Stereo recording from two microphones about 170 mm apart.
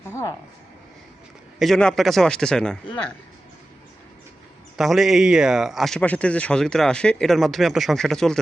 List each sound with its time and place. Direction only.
0.1 s speech: 15° left (ahead or behind)
1.5 s speech: centre (ahead or behind)
4.8 s speech: centre (ahead or behind)